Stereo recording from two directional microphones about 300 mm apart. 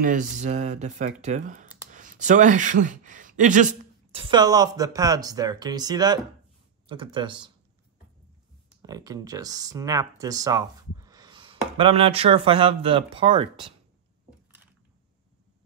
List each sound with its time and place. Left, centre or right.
0.0 s speech: right
8.8 s speech: centre